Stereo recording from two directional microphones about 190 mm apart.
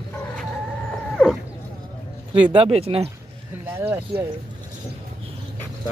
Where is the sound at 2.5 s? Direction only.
30° right (ahead or behind).